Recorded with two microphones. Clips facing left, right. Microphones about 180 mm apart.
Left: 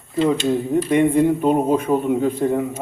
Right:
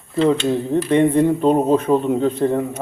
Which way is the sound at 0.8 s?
10° left (ahead or behind).